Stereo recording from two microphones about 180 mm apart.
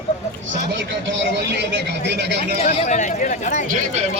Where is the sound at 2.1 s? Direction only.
70° right (ahead or behind).